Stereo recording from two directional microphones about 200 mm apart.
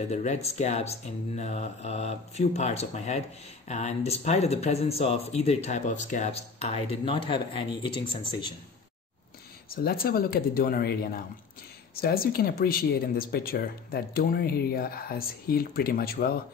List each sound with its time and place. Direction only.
0.1 s speech: 35° left (ahead or behind)
9.7 s speech: 50° left (ahead or behind)